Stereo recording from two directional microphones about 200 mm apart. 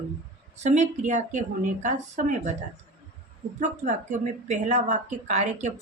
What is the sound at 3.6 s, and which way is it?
A woman's voice, 40° right (ahead or behind).